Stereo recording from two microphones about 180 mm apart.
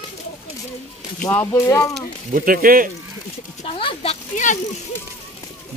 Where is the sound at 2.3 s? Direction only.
50° right (ahead or behind).